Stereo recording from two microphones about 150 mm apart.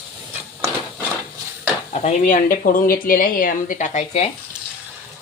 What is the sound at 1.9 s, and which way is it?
Speech, 50° left (ahead or behind).